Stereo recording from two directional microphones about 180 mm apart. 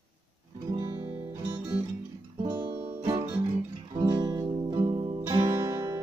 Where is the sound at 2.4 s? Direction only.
25° right (ahead or behind).